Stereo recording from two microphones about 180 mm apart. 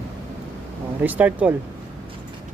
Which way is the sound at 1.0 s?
10° right (ahead or behind).